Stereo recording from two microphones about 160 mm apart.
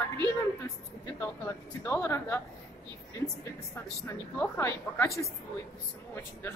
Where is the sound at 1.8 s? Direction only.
15° left (ahead or behind).